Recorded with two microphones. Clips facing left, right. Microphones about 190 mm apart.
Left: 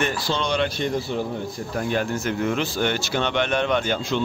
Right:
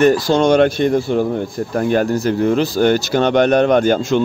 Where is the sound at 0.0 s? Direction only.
40° right (ahead or behind).